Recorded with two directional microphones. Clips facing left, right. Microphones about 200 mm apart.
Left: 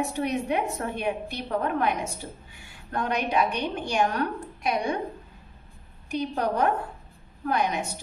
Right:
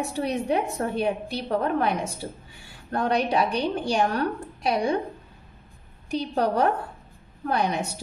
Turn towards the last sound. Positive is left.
turn(degrees=-35)  # may be behind; listen again after turning